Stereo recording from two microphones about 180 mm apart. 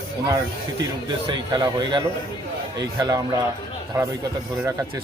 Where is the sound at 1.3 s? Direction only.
25° right (ahead or behind).